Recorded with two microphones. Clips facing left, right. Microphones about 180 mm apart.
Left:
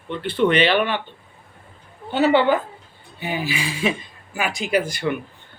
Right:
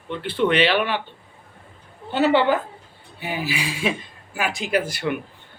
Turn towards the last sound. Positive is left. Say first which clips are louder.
# left 2 dB
turn(degrees=-5)  # may be behind; listen again after turning